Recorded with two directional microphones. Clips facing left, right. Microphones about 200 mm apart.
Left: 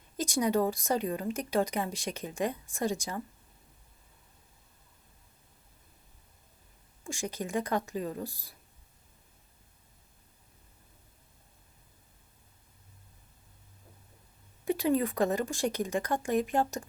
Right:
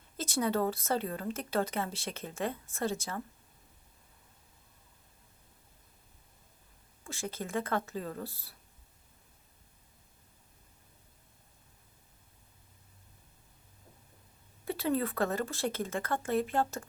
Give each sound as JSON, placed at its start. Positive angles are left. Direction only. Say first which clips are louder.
{"t": 0.2, "sound": "speech", "louder": "left 3 dB", "side_deg": 15}
{"t": 7.0, "sound": "speech", "louder": "left 3 dB", "side_deg": 15}
{"t": 14.6, "sound": "speech", "louder": "left 4 dB", "side_deg": 15}